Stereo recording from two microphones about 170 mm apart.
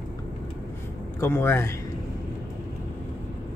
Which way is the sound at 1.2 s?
15° left (ahead or behind).